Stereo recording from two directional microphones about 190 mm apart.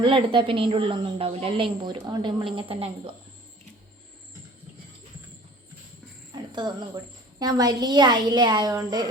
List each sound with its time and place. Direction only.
0.0 s a woman's voice: 25° right (ahead or behind)
6.3 s a woman's voice: 20° right (ahead or behind)